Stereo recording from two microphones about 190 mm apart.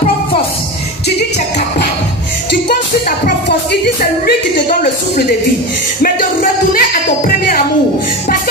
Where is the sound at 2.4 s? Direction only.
65° left (ahead or behind).